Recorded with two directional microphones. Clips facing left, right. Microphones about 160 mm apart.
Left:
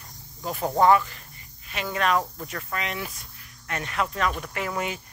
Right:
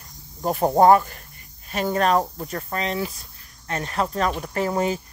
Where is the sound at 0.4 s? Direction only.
45° right (ahead or behind).